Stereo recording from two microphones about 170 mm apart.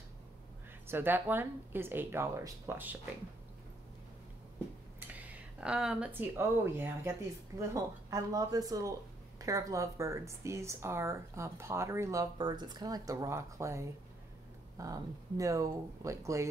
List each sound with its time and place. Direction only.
0.8 s speech: 10° right (ahead or behind)
5.0 s speech: 10° right (ahead or behind)